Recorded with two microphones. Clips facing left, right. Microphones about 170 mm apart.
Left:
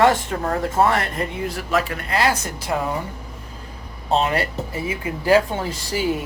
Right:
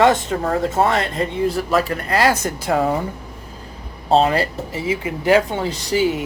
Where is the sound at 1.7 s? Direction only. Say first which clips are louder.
Right 3 dB; 40° right (ahead or behind).